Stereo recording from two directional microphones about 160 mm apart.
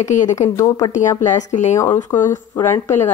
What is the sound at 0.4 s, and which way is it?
Speech, 20° left (ahead or behind).